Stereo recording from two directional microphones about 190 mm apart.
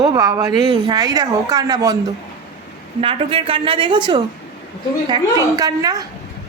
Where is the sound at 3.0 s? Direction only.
30° right (ahead or behind).